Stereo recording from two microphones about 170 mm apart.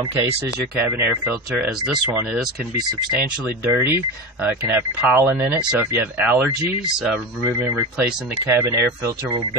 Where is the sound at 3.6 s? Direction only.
15° right (ahead or behind).